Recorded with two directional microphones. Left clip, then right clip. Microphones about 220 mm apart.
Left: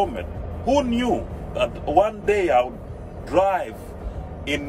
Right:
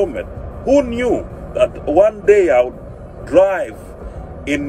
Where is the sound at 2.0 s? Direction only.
20° left (ahead or behind).